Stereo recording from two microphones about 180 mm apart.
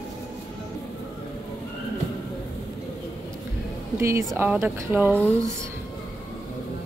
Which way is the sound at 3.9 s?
15° right (ahead or behind).